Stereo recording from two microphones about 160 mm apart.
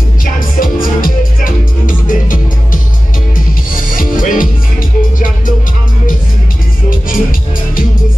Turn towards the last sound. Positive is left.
turn(degrees=60)  # may be behind; listen again after turning